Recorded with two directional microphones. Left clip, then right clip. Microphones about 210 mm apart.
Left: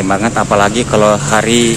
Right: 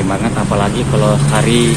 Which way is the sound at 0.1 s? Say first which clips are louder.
Left 8 dB; 30° left (ahead or behind).